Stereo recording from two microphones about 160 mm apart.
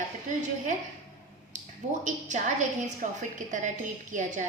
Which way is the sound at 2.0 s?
50° right (ahead or behind).